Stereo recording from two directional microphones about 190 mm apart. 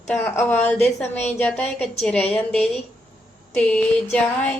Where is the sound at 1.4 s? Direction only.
5° left (ahead or behind).